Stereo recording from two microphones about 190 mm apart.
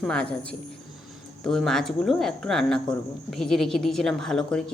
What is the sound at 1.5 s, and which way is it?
Speech, centre (ahead or behind).